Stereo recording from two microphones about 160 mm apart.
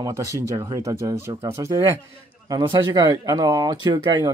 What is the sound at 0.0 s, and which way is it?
Speech, 20° right (ahead or behind).